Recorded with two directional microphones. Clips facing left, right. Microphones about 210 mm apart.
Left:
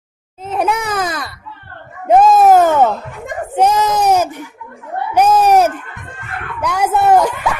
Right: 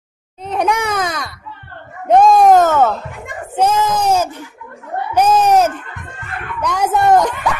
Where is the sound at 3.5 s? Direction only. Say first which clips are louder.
Left 1 dB; 15° left (ahead or behind).